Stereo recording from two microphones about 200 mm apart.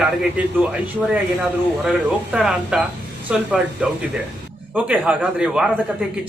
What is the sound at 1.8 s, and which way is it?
A man's voice, 5° right (ahead or behind).